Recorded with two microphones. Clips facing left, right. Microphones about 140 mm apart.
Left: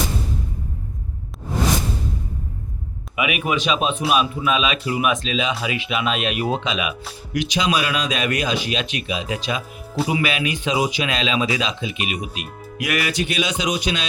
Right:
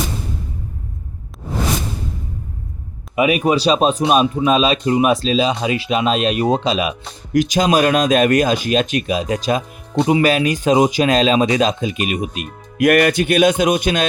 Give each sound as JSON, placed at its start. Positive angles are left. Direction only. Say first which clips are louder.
{"t": 3.2, "sound": "speech", "louder": "right 7 dB", "side_deg": -35}